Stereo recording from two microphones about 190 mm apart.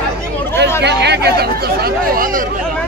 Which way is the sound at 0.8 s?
60° right (ahead or behind).